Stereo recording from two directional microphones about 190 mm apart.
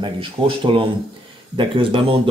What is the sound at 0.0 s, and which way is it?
Speech, 25° right (ahead or behind).